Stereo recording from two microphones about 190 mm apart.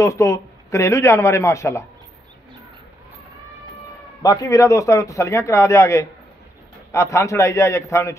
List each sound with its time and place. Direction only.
0.0 s a man's voice: 15° left (ahead or behind)
4.2 s a man's voice: 20° left (ahead or behind)